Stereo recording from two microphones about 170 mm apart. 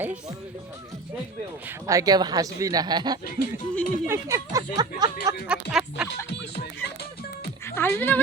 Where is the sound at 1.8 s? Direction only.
20° right (ahead or behind).